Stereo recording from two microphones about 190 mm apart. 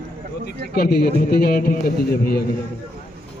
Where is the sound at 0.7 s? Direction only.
55° left (ahead or behind).